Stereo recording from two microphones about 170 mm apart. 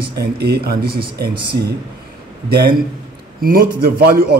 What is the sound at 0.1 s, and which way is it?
Speech, 70° right (ahead or behind).